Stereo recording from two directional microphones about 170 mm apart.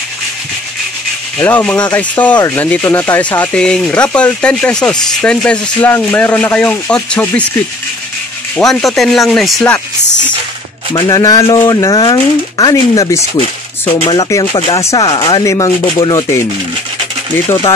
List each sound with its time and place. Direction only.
1.4 s speech: 10° left (ahead or behind)
8.5 s speech: centre (ahead or behind)
10.9 s speech: 25° left (ahead or behind)